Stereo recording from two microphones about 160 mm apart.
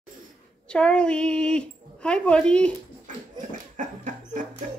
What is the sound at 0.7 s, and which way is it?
Speech, 5° left (ahead or behind).